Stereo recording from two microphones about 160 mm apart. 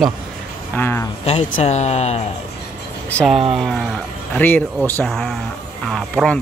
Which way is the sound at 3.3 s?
35° right (ahead or behind).